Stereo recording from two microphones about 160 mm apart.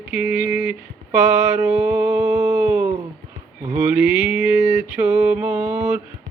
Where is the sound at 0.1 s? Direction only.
10° right (ahead or behind).